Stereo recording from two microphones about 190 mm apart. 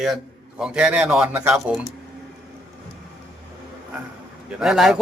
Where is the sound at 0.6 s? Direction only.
5° right (ahead or behind).